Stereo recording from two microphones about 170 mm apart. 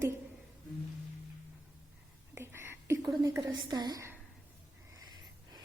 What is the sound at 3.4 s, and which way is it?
Speech, 25° right (ahead or behind).